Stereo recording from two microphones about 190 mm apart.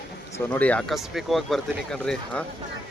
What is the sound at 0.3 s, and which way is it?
Speech, 10° left (ahead or behind).